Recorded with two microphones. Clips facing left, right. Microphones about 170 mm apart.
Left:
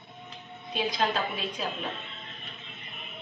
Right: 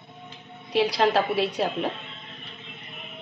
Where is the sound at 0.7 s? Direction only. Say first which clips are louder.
Right 7 dB; 80° right.